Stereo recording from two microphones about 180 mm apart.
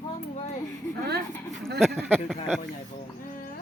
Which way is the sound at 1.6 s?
Centre (ahead or behind).